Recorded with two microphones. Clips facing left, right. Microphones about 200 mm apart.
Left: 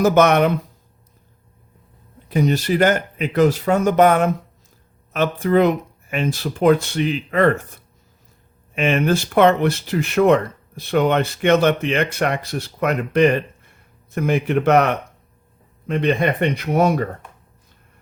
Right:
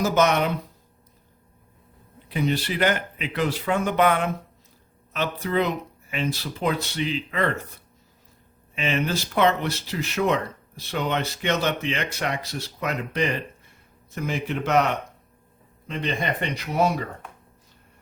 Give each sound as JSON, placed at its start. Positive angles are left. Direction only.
{"t": 0.0, "sound": "speech", "side_deg": 55}
{"t": 2.3, "sound": "speech", "side_deg": 45}
{"t": 8.7, "sound": "speech", "side_deg": 55}